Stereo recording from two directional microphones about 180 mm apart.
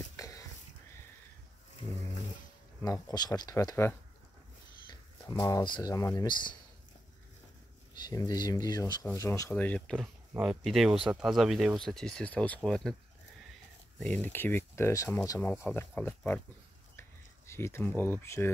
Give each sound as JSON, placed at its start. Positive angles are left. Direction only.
{"t": 0.1, "sound": "whispering", "side_deg": 20}
{"t": 2.8, "sound": "speech", "side_deg": 20}
{"t": 5.2, "sound": "speech", "side_deg": 15}
{"t": 7.9, "sound": "speech", "side_deg": 20}
{"t": 13.9, "sound": "speech", "side_deg": 5}
{"t": 17.5, "sound": "speech", "side_deg": 15}